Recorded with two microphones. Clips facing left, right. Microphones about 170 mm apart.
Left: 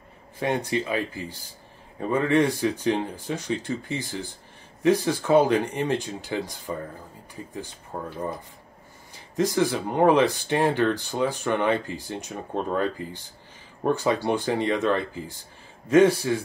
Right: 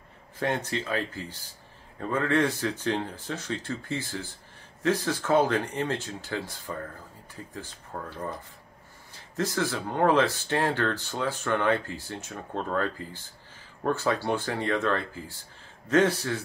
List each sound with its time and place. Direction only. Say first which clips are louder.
0.4 s speech: left 4 dB; 15° left (ahead or behind)